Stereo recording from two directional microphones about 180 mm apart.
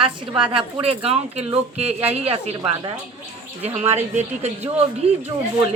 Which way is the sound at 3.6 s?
40° right (ahead or behind).